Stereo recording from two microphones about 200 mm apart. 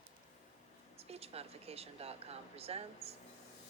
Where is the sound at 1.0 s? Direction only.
30° right (ahead or behind).